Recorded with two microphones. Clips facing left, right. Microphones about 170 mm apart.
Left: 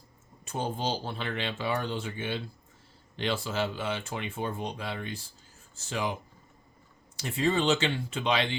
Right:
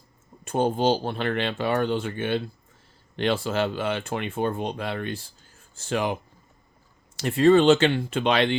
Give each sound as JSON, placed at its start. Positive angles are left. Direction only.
{"t": 0.4, "sound": "speech", "side_deg": -60}
{"t": 7.2, "sound": "speech", "side_deg": -60}